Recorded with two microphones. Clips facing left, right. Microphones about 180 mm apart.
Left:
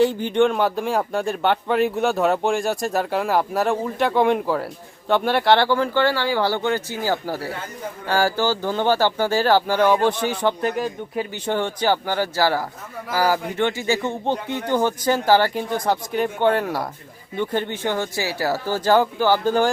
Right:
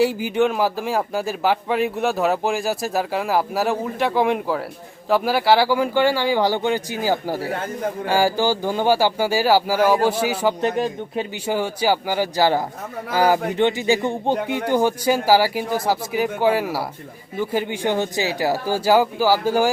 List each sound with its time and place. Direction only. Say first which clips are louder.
0.0 s speech: left 1 dB; 5° right (ahead or behind)
10.6 s speech: right 2 dB; 25° right (ahead or behind)
11.4 s speech: right 1 dB; 10° right (ahead or behind)